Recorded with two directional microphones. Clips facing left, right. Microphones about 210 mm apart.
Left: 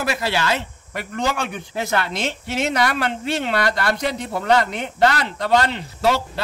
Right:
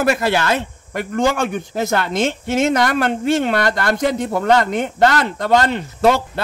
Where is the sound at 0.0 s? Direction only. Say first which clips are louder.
Right 6 dB; 50° right (ahead or behind).